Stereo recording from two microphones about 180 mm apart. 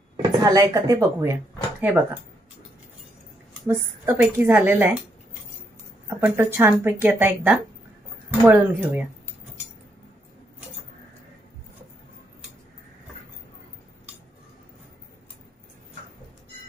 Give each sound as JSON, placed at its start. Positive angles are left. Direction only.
{"t": 0.4, "sound": "speech", "side_deg": -20}
{"t": 3.6, "sound": "speech", "side_deg": -10}
{"t": 6.0, "sound": "speech", "side_deg": -10}